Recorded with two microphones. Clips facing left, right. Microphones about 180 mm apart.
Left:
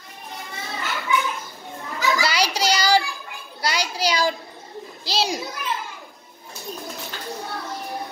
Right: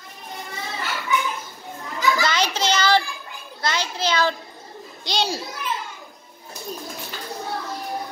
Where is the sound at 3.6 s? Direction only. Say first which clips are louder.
Left 1 dB; 10° left (ahead or behind).